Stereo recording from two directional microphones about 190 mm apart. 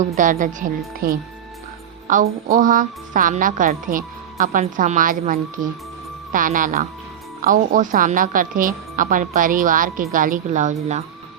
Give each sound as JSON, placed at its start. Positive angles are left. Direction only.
{"t": 0.2, "sound": "a woman's voice", "side_deg": -40}
{"t": 2.0, "sound": "music", "side_deg": -45}
{"t": 2.6, "sound": "a woman's voice", "side_deg": -45}